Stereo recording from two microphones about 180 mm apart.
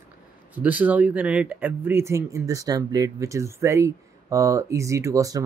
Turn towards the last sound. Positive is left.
turn(degrees=-20)  # may be behind; listen again after turning